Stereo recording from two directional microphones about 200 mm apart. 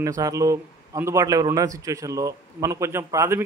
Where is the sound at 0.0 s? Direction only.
15° right (ahead or behind).